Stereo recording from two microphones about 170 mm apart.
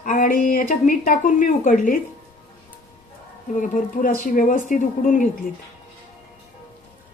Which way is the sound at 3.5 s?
50° left (ahead or behind).